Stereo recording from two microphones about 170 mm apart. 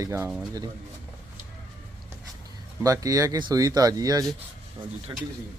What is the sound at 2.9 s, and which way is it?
Speech, 20° right (ahead or behind).